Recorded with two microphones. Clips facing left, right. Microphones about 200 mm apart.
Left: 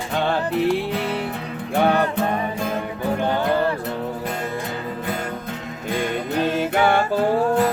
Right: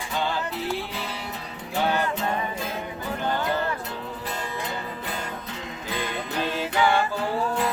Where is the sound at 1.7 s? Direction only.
55° left (ahead or behind).